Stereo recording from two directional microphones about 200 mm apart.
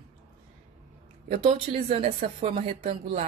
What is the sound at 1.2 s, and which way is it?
Speech, 30° right (ahead or behind).